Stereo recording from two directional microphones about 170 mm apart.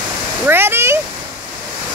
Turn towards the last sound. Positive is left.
turn(degrees=-15)  # may be behind; listen again after turning